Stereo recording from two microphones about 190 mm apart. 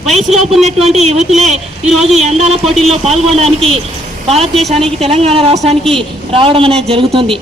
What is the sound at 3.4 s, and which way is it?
Speech, 35° right (ahead or behind).